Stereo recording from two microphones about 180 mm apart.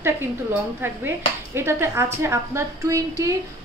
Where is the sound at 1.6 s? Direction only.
15° right (ahead or behind).